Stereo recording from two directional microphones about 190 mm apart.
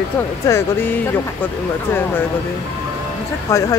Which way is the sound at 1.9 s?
10° left (ahead or behind).